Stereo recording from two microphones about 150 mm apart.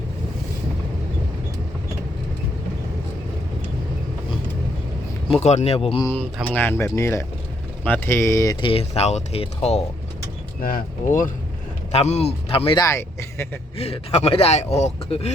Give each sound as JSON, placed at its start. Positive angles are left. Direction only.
{"t": 5.3, "sound": "speech", "side_deg": 50}
{"t": 6.5, "sound": "speech", "side_deg": 15}
{"t": 8.6, "sound": "speech", "side_deg": 40}
{"t": 10.6, "sound": "speech", "side_deg": 70}
{"t": 11.9, "sound": "speech", "side_deg": 45}
{"t": 12.8, "sound": "speech", "side_deg": 15}
{"t": 13.7, "sound": "speech", "side_deg": 45}